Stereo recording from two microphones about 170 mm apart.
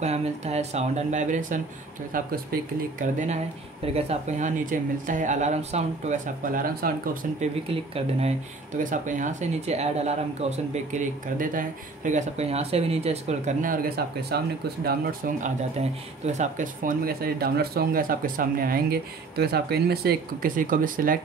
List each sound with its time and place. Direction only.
0.0 s speech: 40° right (ahead or behind)
3.0 s speech: 45° right (ahead or behind)
6.5 s speech: 60° right (ahead or behind)
7.3 s speech: 35° right (ahead or behind)
8.7 s speech: 50° right (ahead or behind)
16.3 s speech: 45° right (ahead or behind)